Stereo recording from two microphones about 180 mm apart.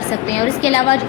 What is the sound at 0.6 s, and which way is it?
Speech, 35° left (ahead or behind).